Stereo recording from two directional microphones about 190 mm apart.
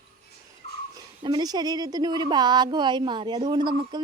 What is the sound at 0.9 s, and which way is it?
Speech, 20° right (ahead or behind).